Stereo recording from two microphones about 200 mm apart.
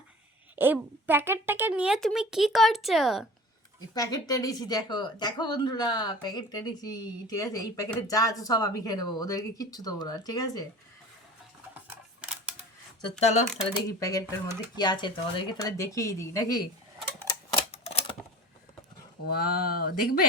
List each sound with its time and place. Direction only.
0.5 s speech: 10° right (ahead or behind)
3.8 s a woman's voice: 20° left (ahead or behind)
12.2 s typewriter: 5° right (ahead or behind)
13.1 s speech: 35° left (ahead or behind)
13.8 s speech: 15° left (ahead or behind)
17.7 s typewriter: 30° left (ahead or behind)
19.2 s speech: 50° left (ahead or behind)